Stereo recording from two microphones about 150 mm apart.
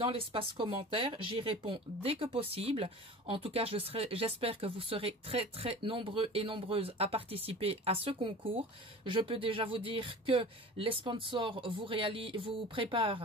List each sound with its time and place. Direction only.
0.0 s speech: 35° right (ahead or behind)